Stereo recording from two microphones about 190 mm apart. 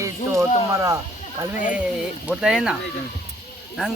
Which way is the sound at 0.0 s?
15° right (ahead or behind).